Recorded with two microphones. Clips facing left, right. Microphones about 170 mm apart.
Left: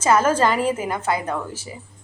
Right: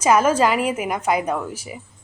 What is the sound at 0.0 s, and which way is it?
A woman's voice, 10° right (ahead or behind).